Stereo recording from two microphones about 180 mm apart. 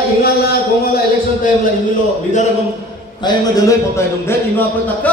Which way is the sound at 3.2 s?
20° left (ahead or behind).